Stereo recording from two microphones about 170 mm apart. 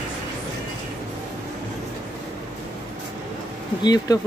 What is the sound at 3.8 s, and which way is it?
Speech, 25° left (ahead or behind).